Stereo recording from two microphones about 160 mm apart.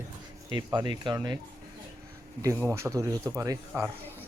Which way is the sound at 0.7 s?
30° right (ahead or behind).